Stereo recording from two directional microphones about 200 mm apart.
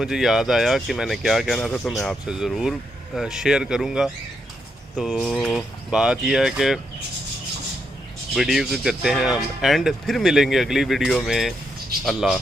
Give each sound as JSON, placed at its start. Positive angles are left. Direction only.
{"t": 0.0, "sound": "speech", "side_deg": 0}
{"t": 8.4, "sound": "speech", "side_deg": 0}